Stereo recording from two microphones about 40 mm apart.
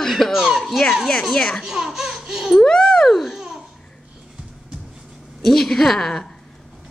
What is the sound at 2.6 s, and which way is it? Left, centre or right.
Speech, centre.